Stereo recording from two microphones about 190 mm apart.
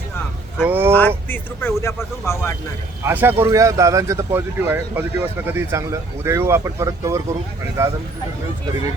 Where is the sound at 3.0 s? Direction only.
10° right (ahead or behind).